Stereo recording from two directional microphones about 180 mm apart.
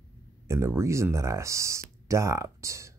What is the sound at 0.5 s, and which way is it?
Speech, 15° right (ahead or behind).